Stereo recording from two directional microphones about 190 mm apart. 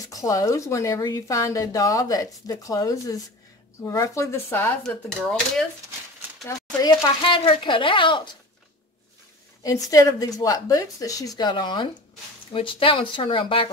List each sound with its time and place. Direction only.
0.1 s a woman's voice: 15° left (ahead or behind)
6.4 s a woman's voice: 20° left (ahead or behind)
9.6 s a woman's voice: 20° left (ahead or behind)